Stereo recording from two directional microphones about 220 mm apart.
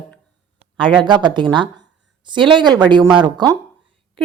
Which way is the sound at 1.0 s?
20° right (ahead or behind).